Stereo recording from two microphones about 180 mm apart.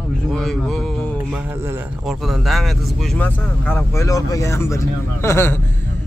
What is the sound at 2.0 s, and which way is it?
Speech, centre (ahead or behind).